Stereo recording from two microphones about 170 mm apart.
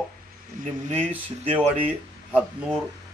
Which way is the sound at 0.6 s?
55° right (ahead or behind).